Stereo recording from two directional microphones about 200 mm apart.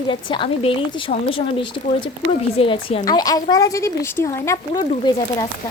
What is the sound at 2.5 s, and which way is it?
A woman's voice, 30° left (ahead or behind).